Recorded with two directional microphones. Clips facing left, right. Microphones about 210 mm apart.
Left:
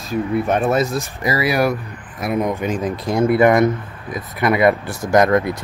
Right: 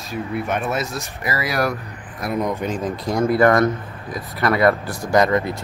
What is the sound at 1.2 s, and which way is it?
Speech, 20° left (ahead or behind).